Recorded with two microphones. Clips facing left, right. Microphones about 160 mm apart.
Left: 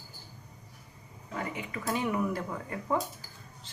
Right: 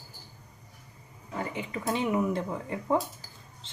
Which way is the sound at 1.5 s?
25° right (ahead or behind).